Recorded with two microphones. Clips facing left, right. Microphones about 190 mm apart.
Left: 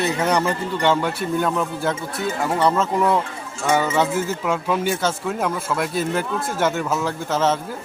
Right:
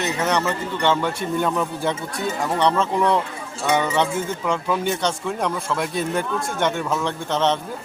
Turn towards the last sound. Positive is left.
turn(degrees=5)  # may be behind; listen again after turning